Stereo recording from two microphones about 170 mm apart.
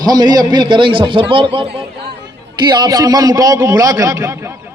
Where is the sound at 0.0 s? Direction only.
25° right (ahead or behind).